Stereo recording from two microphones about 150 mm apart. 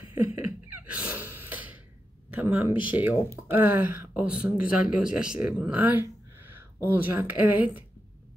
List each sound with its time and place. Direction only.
0.7 s gasp: 10° right (ahead or behind)
2.4 s speech: 10° right (ahead or behind)